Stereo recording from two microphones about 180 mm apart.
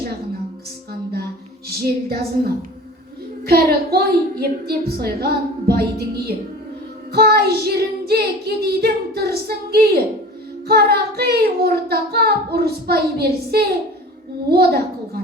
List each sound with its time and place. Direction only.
1.7 s speech: 60° right (ahead or behind)